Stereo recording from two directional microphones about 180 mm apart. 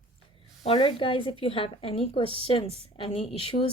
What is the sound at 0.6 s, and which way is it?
A woman's voice, 30° left (ahead or behind).